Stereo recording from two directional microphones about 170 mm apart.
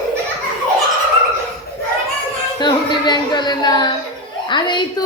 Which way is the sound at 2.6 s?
25° left (ahead or behind).